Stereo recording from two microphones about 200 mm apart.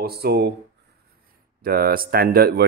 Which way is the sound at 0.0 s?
50° right (ahead or behind).